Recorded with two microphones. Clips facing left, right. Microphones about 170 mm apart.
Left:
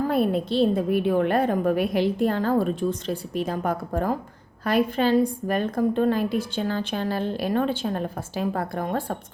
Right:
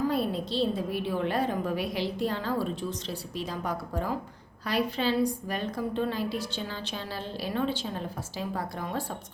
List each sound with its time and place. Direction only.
0.1 s a woman's voice: 55° left (ahead or behind)